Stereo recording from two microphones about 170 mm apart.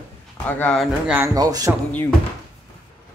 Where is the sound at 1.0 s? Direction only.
10° right (ahead or behind).